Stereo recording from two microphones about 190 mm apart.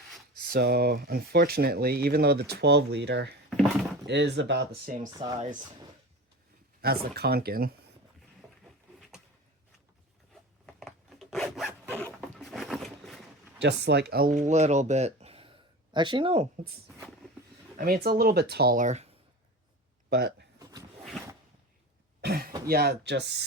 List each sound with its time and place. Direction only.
0.5 s speech: 55° right (ahead or behind)
5.2 s speech: 30° right (ahead or behind)
6.8 s speech: 55° right (ahead or behind)
10.7 s zipper: centre (ahead or behind)
11.9 s a sound: 5° left (ahead or behind)
13.6 s speech: 65° right (ahead or behind); by 16.5 s 30° right (ahead or behind)
17.7 s speech: 55° right (ahead or behind); by 19.1 s 35° right (ahead or behind)
20.1 s speech: 55° right (ahead or behind)
20.6 s a sound: 20° right (ahead or behind)
22.2 s speech: 55° right (ahead or behind)